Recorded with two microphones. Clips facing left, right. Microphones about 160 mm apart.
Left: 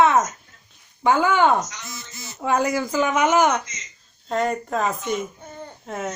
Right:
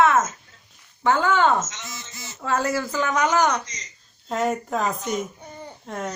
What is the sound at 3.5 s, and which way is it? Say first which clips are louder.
Speech: left 2 dB; 35° right (ahead or behind).